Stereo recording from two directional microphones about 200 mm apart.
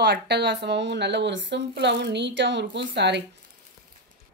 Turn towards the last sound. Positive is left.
turn(degrees=-60)  # may be behind; listen again after turning